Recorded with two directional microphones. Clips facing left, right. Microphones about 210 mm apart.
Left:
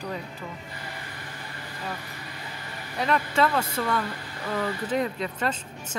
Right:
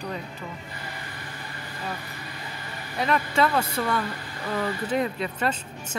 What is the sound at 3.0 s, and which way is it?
Speech, 10° right (ahead or behind).